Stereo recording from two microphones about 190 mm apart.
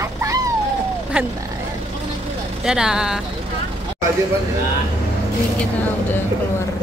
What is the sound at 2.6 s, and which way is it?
Speech, 5° right (ahead or behind).